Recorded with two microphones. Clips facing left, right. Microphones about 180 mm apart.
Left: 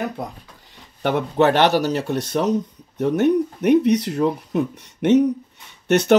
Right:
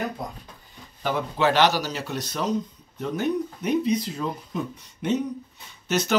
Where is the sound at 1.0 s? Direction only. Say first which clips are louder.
Left 6 dB; 60° left (ahead or behind).